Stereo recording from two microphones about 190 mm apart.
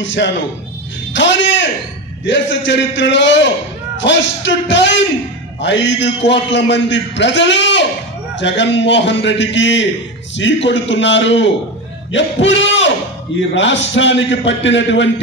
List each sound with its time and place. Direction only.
0.0 s a man's voice: 75° left (ahead or behind)